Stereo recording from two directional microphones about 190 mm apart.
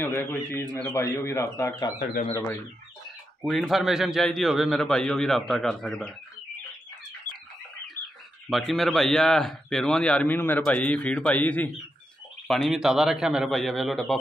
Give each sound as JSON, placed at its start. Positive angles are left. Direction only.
{"t": 0.0, "sound": "a man's voice", "side_deg": 10}
{"t": 2.0, "sound": "speech", "side_deg": 40}
{"t": 3.4, "sound": "a man's voice", "side_deg": 0}
{"t": 8.5, "sound": "a man's voice", "side_deg": 0}
{"t": 12.4, "sound": "a man's voice", "side_deg": 0}